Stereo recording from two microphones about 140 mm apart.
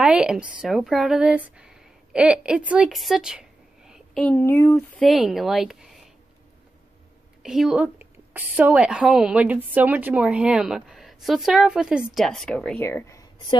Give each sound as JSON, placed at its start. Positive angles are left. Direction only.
{"t": 0.0, "sound": "a woman's voice", "side_deg": -5}
{"t": 2.7, "sound": "a sound", "side_deg": -5}
{"t": 4.2, "sound": "speech", "side_deg": 15}
{"t": 5.0, "sound": "a woman's voice", "side_deg": 0}
{"t": 7.4, "sound": "a woman's voice", "side_deg": -5}